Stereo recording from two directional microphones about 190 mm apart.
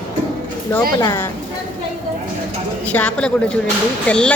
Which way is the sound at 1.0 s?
15° left (ahead or behind).